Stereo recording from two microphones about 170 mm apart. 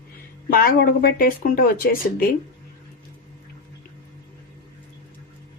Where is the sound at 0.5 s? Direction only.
60° left (ahead or behind).